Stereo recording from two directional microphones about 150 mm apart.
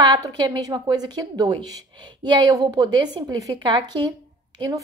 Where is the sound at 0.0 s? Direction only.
25° right (ahead or behind).